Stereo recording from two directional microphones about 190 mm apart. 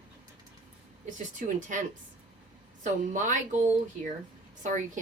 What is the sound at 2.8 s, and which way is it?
A woman's voice, 40° right (ahead or behind).